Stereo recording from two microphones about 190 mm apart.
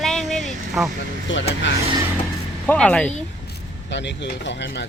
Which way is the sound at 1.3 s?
80° left.